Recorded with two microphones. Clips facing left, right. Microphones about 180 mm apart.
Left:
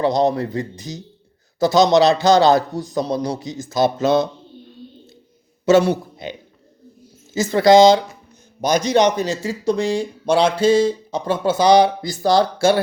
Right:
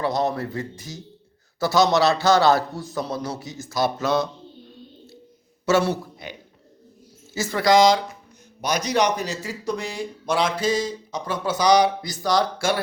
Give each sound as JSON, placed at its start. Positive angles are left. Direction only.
{"t": 0.0, "sound": "a man's voice", "side_deg": 20}
{"t": 5.6, "sound": "speech", "side_deg": 20}
{"t": 7.3, "sound": "speech", "side_deg": 25}